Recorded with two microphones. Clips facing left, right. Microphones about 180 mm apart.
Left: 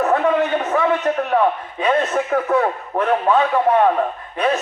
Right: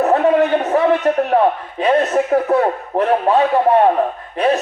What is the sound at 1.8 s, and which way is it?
A man's voice, 35° right (ahead or behind).